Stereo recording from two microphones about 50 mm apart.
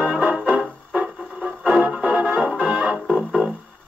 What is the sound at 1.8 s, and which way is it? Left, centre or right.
Music, right.